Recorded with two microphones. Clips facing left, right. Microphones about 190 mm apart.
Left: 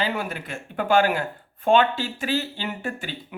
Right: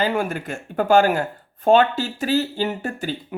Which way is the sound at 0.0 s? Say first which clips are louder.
Right 5 dB; 45° right (ahead or behind).